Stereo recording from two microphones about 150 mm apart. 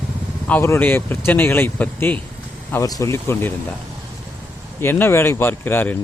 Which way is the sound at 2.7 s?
25° left (ahead or behind).